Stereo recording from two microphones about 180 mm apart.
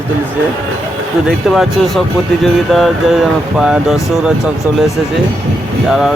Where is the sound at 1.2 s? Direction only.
Centre (ahead or behind).